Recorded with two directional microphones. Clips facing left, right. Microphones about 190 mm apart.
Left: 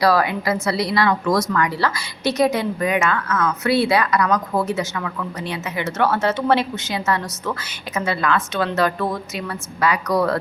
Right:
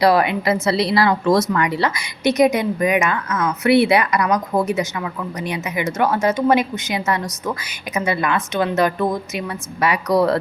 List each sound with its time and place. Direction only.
0.0 s speech: 25° right (ahead or behind)